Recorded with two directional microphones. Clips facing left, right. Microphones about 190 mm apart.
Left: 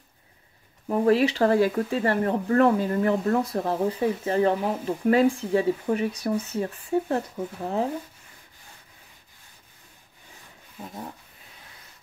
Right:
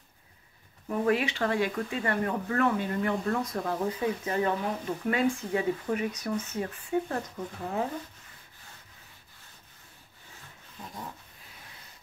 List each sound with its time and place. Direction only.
0.8 s speech: 35° left (ahead or behind)